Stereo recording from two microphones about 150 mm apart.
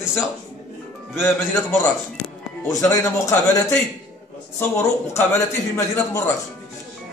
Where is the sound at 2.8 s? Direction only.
20° left (ahead or behind).